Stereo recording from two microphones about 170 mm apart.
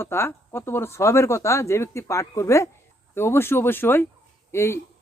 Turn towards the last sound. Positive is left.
turn(degrees=15)  # may be behind; listen again after turning